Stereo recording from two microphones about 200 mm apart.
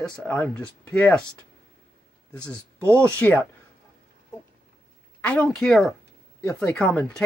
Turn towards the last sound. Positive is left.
turn(degrees=5)  # may be behind; listen again after turning